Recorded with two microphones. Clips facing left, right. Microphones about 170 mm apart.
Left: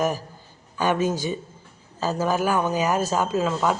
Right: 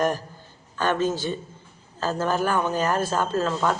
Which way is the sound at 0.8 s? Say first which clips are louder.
Left 1 dB; 10° left (ahead or behind).